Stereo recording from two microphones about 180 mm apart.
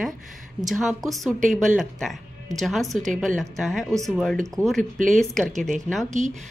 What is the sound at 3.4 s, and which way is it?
Speech, centre (ahead or behind).